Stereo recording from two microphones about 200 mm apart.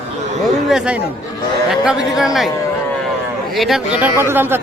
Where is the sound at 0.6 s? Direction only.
5° right (ahead or behind).